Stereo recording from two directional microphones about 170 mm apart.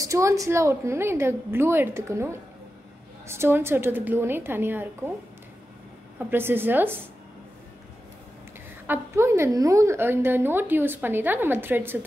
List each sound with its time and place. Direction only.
0.0 s a woman's voice: 20° right (ahead or behind)
6.1 s a woman's voice: 10° right (ahead or behind)
8.8 s a woman's voice: 15° right (ahead or behind)